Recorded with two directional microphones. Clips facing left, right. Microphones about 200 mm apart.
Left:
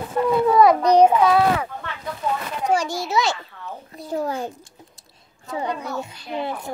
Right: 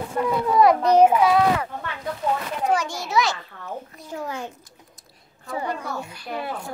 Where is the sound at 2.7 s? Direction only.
30° left (ahead or behind).